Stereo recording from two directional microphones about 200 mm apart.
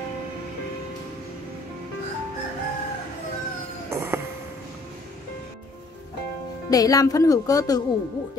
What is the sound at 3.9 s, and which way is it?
Music, 10° right (ahead or behind).